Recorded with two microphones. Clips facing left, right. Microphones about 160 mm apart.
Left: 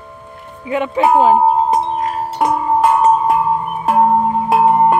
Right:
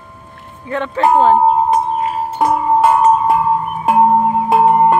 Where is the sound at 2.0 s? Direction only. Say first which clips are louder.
Right 1 dB; 5° right (ahead or behind).